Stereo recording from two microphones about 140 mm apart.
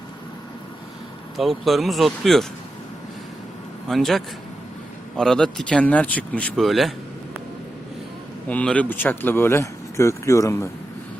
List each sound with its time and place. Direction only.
1.4 s speech: centre (ahead or behind)
3.8 s speech: centre (ahead or behind)
8.4 s speech: 10° left (ahead or behind)